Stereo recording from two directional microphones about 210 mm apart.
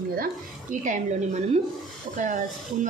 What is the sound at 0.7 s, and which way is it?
A woman's voice, 35° right (ahead or behind).